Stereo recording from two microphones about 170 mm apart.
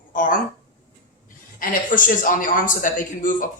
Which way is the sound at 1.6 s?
55° left (ahead or behind).